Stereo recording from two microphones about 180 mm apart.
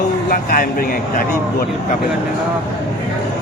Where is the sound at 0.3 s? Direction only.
55° left (ahead or behind).